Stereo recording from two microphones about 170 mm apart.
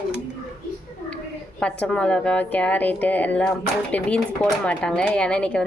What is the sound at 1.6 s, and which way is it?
A woman's voice, 5° left (ahead or behind).